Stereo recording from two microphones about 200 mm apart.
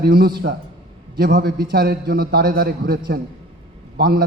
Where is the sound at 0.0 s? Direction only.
50° right (ahead or behind).